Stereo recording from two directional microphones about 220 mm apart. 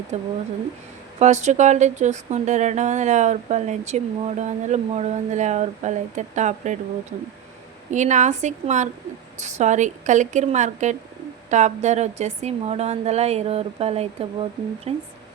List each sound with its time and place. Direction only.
0.1 s speech: 30° right (ahead or behind)
7.9 s speech: 35° right (ahead or behind)